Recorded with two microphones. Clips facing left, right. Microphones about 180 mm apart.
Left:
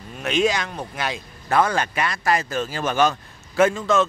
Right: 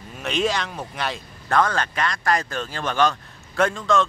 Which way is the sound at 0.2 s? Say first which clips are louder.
Left 2 dB; centre (ahead or behind).